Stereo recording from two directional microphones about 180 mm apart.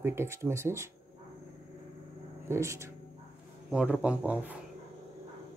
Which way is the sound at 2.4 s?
15° right (ahead or behind).